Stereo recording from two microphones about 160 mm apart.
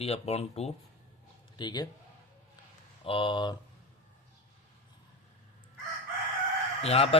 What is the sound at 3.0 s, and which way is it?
Speech, 30° left (ahead or behind).